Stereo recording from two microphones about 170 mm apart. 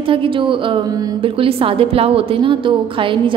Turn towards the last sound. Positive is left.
turn(degrees=-30)  # may be behind; listen again after turning